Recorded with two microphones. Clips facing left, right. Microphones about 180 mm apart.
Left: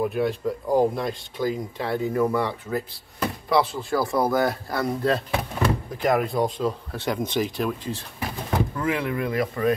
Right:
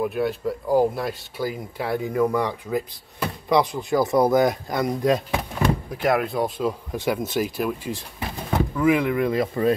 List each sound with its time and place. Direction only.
0.0 s speech: centre (ahead or behind)
5.6 s speech: centre (ahead or behind); by 9.8 s 25° right (ahead or behind)